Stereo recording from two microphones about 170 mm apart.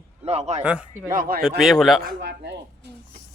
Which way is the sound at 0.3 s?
40° right (ahead or behind).